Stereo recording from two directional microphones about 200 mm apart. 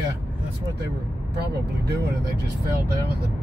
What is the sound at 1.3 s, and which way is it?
Speech, 55° right (ahead or behind).